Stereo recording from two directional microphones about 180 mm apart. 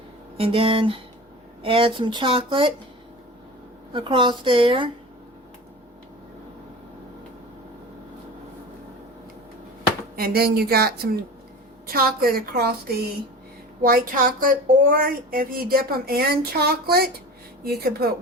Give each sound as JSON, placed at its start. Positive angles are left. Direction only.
{"t": 0.3, "sound": "speech", "side_deg": -30}
{"t": 3.9, "sound": "speech", "side_deg": -25}
{"t": 10.2, "sound": "speech", "side_deg": -55}
{"t": 13.8, "sound": "speech", "side_deg": -50}